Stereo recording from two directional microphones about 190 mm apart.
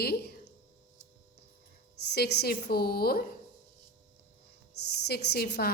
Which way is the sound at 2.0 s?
60° left (ahead or behind).